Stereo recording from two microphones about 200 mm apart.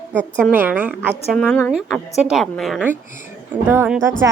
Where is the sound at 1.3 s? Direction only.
5° left (ahead or behind).